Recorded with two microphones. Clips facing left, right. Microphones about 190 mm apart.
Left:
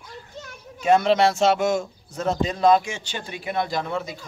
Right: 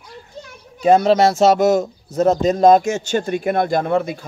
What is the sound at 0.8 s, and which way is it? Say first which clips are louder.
A man's voice: right 5 dB; 40° right (ahead or behind).